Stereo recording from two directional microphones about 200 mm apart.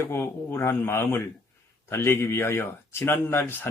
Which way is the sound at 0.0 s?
10° left (ahead or behind).